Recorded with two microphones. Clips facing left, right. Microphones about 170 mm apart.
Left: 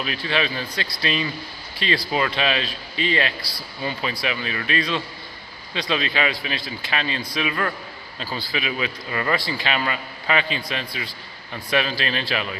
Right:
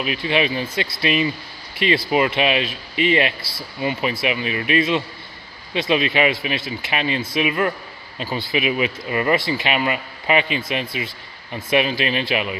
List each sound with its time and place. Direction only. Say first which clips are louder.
0.0 s speech: right 4 dB; 15° right (ahead or behind)